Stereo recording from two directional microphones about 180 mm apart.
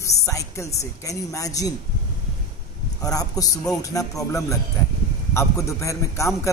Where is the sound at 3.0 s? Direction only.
20° left (ahead or behind).